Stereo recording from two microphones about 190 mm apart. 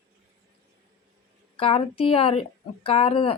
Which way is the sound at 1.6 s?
30° left (ahead or behind).